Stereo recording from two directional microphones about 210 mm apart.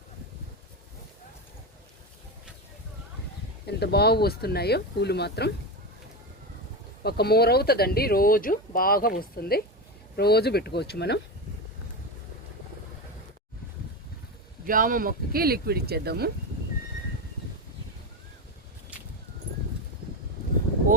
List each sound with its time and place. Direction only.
3.7 s speech: 50° left (ahead or behind)
7.0 s speech: 50° left (ahead or behind)
14.7 s speech: 40° right (ahead or behind)